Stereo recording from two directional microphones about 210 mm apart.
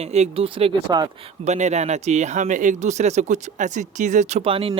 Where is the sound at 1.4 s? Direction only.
30° right (ahead or behind).